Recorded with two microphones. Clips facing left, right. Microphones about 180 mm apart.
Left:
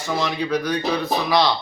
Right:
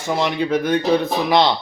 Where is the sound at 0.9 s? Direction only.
25° right (ahead or behind).